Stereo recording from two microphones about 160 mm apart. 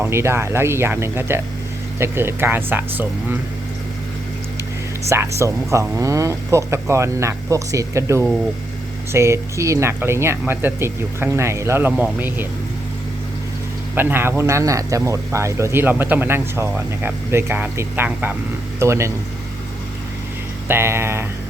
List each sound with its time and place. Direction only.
0.0 s speech: 15° right (ahead or behind)
5.0 s speech: 15° right (ahead or behind)
13.9 s speech: 15° right (ahead or behind)
20.7 s speech: 15° right (ahead or behind)